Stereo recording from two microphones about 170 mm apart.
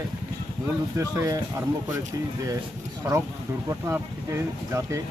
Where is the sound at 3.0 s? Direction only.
15° right (ahead or behind).